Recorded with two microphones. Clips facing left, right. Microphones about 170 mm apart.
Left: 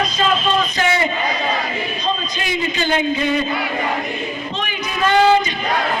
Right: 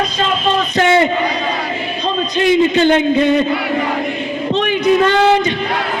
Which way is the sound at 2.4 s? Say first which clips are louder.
Right 11 dB; 60° right (ahead or behind).